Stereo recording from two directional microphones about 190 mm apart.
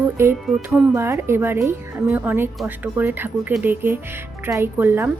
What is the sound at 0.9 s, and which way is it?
A woman's voice, 15° right (ahead or behind).